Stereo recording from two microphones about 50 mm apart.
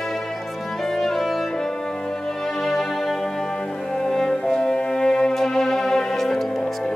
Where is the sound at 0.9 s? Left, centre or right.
Centre.